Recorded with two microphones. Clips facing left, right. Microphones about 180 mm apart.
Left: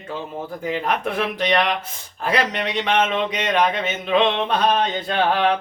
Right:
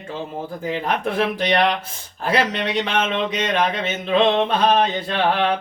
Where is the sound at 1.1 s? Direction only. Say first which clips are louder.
Right 3 dB; 35° right (ahead or behind).